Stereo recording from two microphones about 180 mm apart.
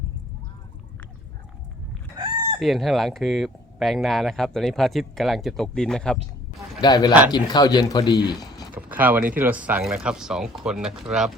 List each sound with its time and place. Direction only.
2.1 s chicken: 25° right (ahead or behind)
2.6 s speech: centre (ahead or behind)
6.8 s speech: 20° left (ahead or behind)
8.7 s a sound: 10° right (ahead or behind)
9.4 s speech: 10° right (ahead or behind)